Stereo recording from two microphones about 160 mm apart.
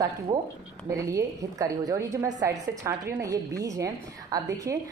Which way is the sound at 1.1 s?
20° right (ahead or behind).